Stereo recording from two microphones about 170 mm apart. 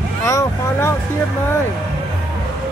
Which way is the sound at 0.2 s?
15° left (ahead or behind).